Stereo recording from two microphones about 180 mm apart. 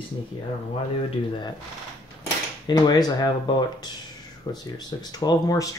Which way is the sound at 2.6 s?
20° left (ahead or behind).